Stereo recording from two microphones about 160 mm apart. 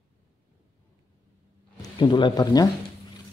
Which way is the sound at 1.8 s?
30° left (ahead or behind).